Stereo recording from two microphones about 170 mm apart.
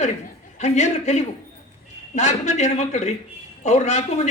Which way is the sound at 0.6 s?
40° left (ahead or behind).